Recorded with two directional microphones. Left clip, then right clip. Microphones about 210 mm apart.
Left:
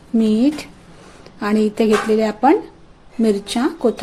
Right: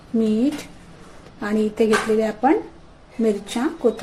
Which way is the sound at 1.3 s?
40° left (ahead or behind).